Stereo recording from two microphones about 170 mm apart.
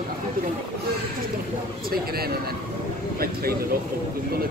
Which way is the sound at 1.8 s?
65° right (ahead or behind).